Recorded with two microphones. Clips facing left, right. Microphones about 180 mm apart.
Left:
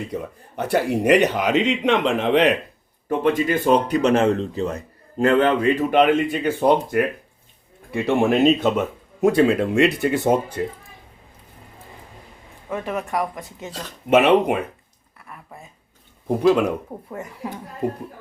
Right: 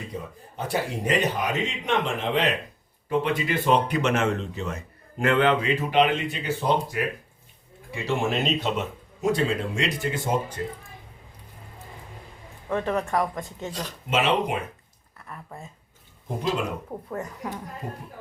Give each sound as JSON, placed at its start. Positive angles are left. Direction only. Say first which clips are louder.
{"t": 0.1, "sound": "a man's voice", "louder": "left 6 dB", "side_deg": 70}
{"t": 3.1, "sound": "speech", "louder": "left 5 dB", "side_deg": 45}
{"t": 12.6, "sound": "speech", "louder": "right 1 dB", "side_deg": 5}
{"t": 14.1, "sound": "speech", "louder": "left 8 dB", "side_deg": 60}
{"t": 17.2, "sound": "speech", "louder": "left 2 dB", "side_deg": 20}